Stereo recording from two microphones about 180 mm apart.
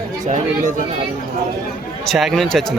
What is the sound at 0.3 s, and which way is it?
Speech, 45° right (ahead or behind).